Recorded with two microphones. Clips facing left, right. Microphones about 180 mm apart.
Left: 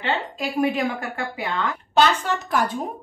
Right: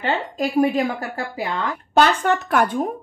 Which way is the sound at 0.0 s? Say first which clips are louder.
Right 3 dB; 40° right (ahead or behind).